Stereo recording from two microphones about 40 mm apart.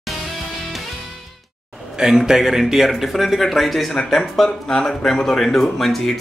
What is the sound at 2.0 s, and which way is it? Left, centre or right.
Speech, centre.